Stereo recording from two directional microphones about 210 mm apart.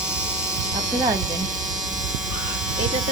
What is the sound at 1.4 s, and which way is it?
Electric shaver, 35° right (ahead or behind).